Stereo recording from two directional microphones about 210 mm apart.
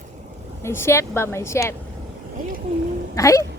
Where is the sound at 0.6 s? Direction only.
10° left (ahead or behind).